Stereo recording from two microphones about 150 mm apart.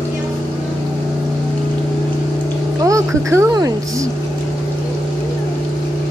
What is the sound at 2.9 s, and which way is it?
Speech, 20° right (ahead or behind).